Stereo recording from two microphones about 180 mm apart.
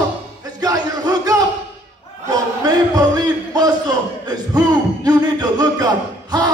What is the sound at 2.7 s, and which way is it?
Speech, 20° right (ahead or behind).